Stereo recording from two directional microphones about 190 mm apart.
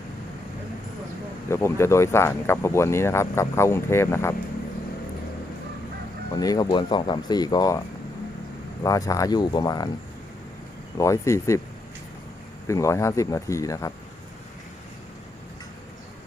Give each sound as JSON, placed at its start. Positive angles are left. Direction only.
{"t": 1.5, "sound": "speech", "side_deg": 15}
{"t": 6.3, "sound": "speech", "side_deg": 20}
{"t": 8.8, "sound": "speech", "side_deg": 20}
{"t": 10.9, "sound": "speech", "side_deg": 15}
{"t": 12.6, "sound": "speech", "side_deg": 15}